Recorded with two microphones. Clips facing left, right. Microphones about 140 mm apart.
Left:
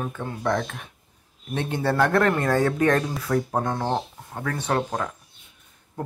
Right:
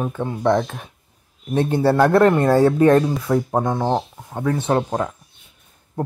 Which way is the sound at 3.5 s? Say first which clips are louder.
Right 5 dB; 20° right (ahead or behind).